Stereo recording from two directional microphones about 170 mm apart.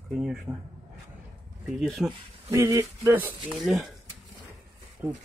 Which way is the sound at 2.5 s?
15° right (ahead or behind).